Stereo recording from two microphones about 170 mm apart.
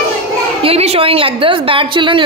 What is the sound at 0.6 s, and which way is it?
A woman's voice, 35° right (ahead or behind).